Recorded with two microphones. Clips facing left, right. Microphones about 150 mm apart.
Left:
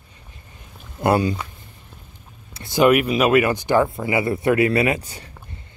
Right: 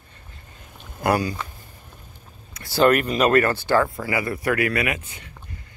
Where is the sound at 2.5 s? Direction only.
25° left (ahead or behind).